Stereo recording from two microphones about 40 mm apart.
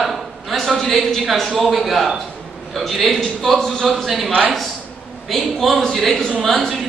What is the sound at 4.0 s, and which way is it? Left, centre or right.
Speech, centre.